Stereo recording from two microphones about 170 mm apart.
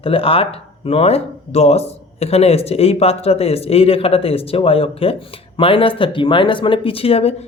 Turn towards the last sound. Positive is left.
turn(degrees=35)  # may be behind; listen again after turning